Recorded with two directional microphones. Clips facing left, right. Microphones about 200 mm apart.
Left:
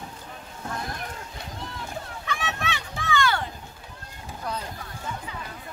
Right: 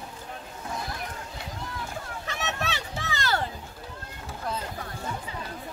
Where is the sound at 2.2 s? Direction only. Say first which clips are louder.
Left 1 dB; 40° right (ahead or behind).